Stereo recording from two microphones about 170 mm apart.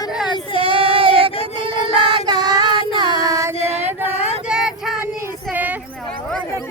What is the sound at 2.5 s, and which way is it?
Child singing, 35° left (ahead or behind).